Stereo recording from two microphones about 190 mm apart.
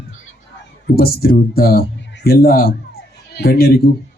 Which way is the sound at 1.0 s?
55° left (ahead or behind).